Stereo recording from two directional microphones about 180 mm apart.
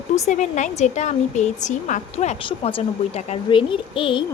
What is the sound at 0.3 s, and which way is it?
A woman's voice, 40° left (ahead or behind).